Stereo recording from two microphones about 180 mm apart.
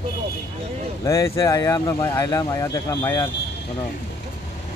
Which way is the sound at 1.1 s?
20° left (ahead or behind).